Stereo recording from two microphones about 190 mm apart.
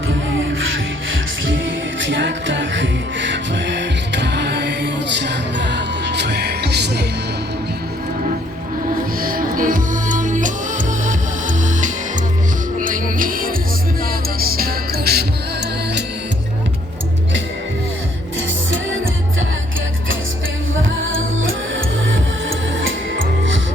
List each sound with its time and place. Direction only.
1.1 s music: 85° right; by 7.0 s 60° right (ahead or behind)
9.2 s music: 45° right (ahead or behind)